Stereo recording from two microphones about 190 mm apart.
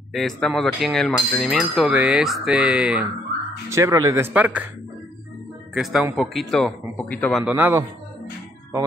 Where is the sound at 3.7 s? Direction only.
15° right (ahead or behind).